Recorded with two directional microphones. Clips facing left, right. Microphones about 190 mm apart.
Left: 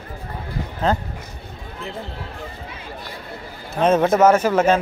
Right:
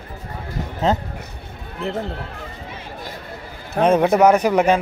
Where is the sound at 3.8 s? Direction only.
15° right (ahead or behind).